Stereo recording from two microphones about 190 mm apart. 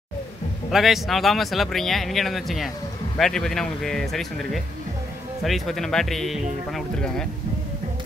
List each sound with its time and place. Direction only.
0.7 s speech: centre (ahead or behind)